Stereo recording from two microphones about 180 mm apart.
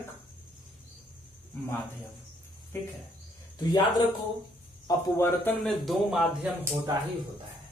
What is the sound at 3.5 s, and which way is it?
Speech, 25° left (ahead or behind).